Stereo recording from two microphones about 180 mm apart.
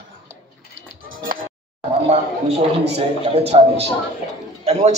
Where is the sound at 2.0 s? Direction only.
35° right (ahead or behind).